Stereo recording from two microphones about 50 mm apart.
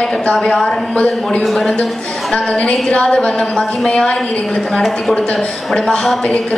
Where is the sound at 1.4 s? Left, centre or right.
Centre.